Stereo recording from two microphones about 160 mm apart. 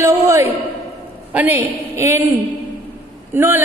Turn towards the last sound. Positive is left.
turn(degrees=-15)  # may be behind; listen again after turning